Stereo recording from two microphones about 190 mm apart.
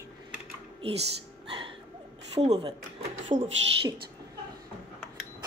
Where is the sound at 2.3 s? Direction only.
30° right (ahead or behind).